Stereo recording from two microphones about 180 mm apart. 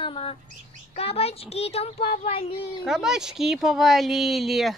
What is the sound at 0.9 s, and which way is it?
A child's voice, 35° left (ahead or behind).